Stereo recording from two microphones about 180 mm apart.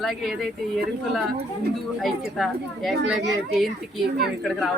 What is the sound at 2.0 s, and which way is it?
Speech, centre (ahead or behind).